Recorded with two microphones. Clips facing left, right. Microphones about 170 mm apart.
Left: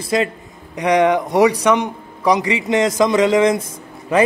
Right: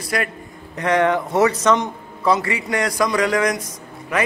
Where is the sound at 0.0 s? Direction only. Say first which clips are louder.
Left 5 dB; 25° left (ahead or behind).